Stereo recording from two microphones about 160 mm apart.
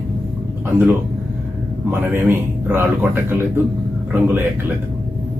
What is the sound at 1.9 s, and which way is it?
Speech, 15° right (ahead or behind).